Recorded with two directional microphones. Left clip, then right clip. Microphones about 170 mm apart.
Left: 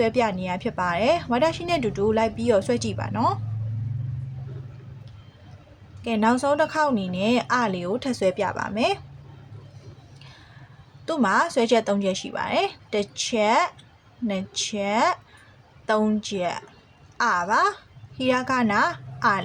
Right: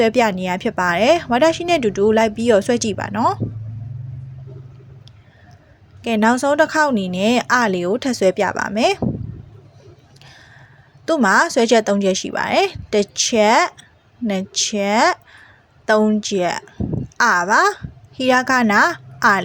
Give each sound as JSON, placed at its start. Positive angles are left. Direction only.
{"t": 0.0, "sound": "speech", "side_deg": -30}
{"t": 6.0, "sound": "speech", "side_deg": -30}
{"t": 11.0, "sound": "speech", "side_deg": -30}